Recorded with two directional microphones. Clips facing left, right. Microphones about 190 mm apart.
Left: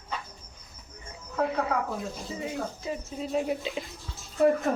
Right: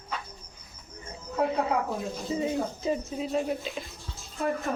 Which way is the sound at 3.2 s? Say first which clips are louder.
Left 3 dB; 5° left (ahead or behind).